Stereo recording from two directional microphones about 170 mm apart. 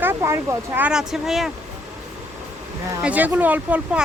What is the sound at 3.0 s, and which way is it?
Speech, 10° right (ahead or behind).